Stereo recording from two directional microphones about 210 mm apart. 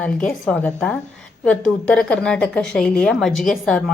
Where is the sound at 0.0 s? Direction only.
5° left (ahead or behind).